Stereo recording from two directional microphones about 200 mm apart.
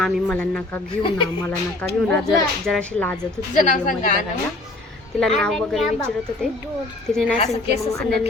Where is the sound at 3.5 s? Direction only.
40° left (ahead or behind).